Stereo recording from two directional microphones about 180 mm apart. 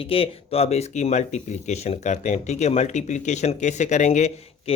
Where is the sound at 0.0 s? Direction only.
30° left (ahead or behind).